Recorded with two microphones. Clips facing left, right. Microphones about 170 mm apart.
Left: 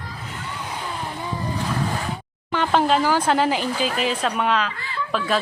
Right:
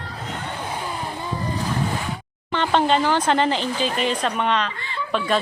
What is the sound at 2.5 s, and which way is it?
Speech, 5° left (ahead or behind).